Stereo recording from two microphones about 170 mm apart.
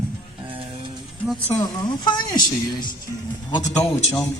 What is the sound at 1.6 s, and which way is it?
Speech, 25° left (ahead or behind).